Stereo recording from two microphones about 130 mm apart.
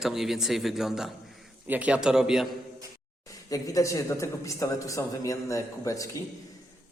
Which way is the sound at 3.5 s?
25° left (ahead or behind).